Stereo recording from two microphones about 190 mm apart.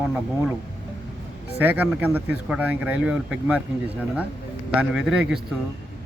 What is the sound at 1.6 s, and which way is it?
Speech, 10° right (ahead or behind).